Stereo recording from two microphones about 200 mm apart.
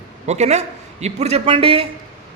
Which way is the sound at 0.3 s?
35° right (ahead or behind).